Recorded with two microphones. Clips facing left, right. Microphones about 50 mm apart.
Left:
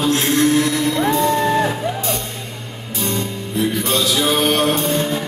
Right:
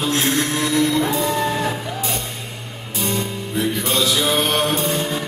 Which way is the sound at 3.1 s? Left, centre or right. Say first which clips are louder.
Even; centre.